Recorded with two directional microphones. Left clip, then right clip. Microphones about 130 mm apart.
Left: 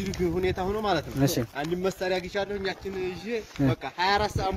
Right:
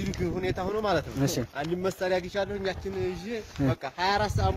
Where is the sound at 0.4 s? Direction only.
45° right (ahead or behind).